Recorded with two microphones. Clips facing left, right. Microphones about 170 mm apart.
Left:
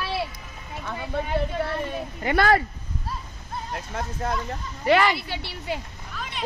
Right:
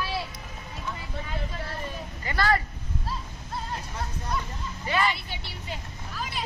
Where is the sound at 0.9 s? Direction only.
65° left (ahead or behind).